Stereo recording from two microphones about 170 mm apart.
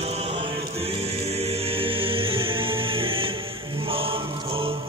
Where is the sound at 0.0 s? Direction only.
40° right (ahead or behind).